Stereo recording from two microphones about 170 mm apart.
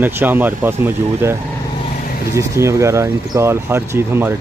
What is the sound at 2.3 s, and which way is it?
Speech, 15° right (ahead or behind).